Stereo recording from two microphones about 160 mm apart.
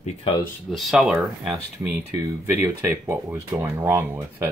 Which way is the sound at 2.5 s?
15° right (ahead or behind).